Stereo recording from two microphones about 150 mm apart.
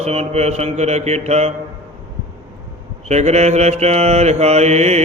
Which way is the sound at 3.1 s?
50° right (ahead or behind).